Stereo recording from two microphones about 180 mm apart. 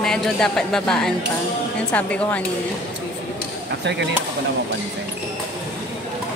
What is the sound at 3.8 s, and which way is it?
Speech, 75° right (ahead or behind).